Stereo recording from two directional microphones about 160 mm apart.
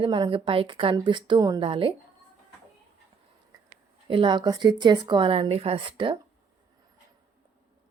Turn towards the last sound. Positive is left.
turn(degrees=-30)  # may be behind; listen again after turning